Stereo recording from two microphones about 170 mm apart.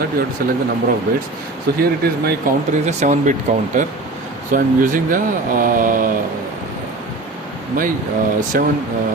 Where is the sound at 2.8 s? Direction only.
45° right (ahead or behind).